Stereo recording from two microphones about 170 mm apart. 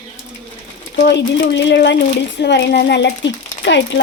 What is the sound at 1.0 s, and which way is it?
Speech, 85° left.